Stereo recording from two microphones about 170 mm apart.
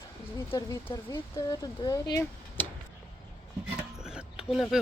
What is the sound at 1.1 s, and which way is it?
Speech, 20° left (ahead or behind).